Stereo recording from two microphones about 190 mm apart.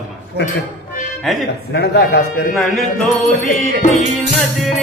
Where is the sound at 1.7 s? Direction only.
60° left (ahead or behind).